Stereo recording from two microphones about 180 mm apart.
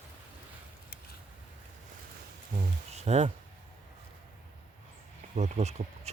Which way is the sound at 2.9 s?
35° right (ahead or behind).